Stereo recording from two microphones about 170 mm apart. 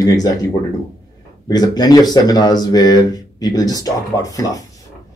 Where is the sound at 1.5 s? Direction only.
25° left (ahead or behind).